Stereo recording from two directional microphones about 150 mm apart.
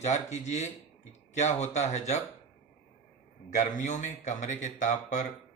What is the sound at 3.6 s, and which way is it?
Speech, 55° left (ahead or behind).